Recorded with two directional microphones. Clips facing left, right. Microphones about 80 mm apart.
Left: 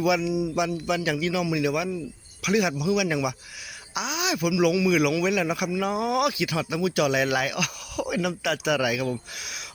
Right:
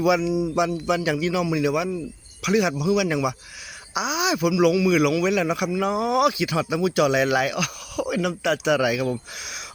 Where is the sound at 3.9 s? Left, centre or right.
Centre.